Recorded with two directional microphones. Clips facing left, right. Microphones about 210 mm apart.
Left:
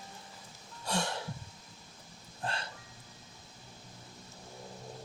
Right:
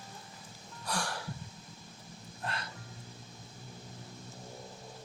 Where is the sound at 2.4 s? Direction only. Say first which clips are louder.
Left 2 dB; 30° left (ahead or behind).